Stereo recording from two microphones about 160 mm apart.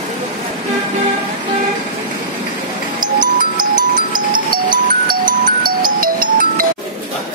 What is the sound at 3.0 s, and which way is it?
Music, 55° right (ahead or behind).